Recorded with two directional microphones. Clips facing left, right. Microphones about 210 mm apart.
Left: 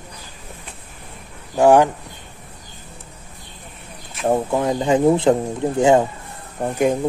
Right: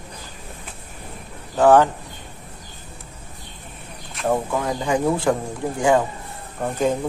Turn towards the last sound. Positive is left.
turn(degrees=15)  # may be behind; listen again after turning